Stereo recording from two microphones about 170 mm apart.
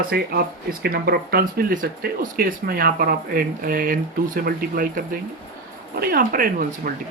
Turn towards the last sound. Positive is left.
turn(degrees=-55)  # may be behind; listen again after turning